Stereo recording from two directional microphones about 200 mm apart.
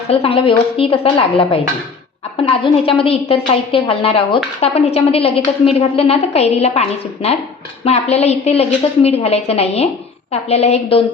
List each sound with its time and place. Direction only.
0.1 s a woman's voice: 30° left (ahead or behind)